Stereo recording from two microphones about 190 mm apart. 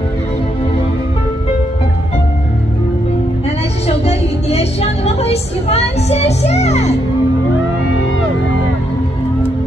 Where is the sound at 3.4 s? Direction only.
35° left (ahead or behind).